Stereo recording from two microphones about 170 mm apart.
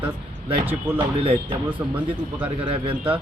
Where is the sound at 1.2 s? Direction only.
35° right (ahead or behind).